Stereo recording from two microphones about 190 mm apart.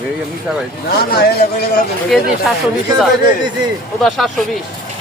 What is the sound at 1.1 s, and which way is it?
Speech, 55° left (ahead or behind).